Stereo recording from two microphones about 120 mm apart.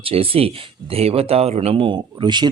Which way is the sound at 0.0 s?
50° right (ahead or behind).